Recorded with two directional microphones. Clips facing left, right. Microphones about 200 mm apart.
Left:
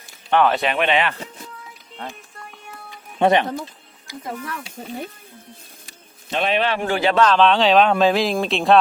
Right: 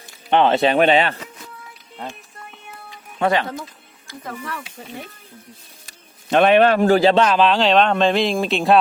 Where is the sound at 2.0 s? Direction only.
5° right (ahead or behind).